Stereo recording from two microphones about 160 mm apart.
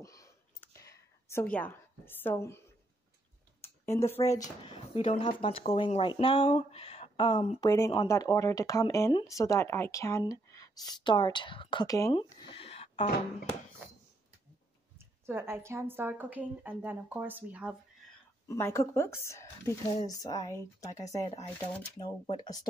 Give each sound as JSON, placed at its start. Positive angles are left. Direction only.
{"t": 0.0, "sound": "a sound", "side_deg": 20}
{"t": 3.6, "sound": "speech", "side_deg": 15}
{"t": 4.9, "sound": "speech", "side_deg": 45}
{"t": 5.2, "sound": "speech", "side_deg": 35}
{"t": 7.6, "sound": "speech", "side_deg": 20}
{"t": 12.3, "sound": "a sound", "side_deg": 30}
{"t": 15.0, "sound": "a woman's voice", "side_deg": -15}
{"t": 18.5, "sound": "speech", "side_deg": 20}